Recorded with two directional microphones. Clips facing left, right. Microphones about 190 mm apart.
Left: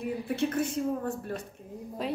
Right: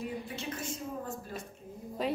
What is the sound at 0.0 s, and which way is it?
Speech, 60° left (ahead or behind).